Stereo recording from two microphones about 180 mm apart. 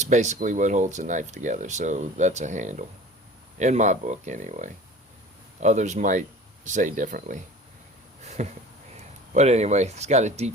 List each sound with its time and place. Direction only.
0.0 s speech: 40° right (ahead or behind)
8.2 s a sound: 40° right (ahead or behind)
9.3 s speech: 35° right (ahead or behind)